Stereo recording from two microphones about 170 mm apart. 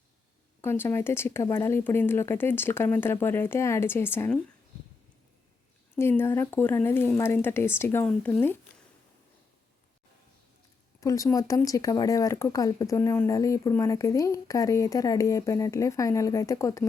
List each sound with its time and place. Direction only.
0.6 s speech: 15° left (ahead or behind)
6.0 s speech: 15° left (ahead or behind)
11.0 s speech: 20° left (ahead or behind)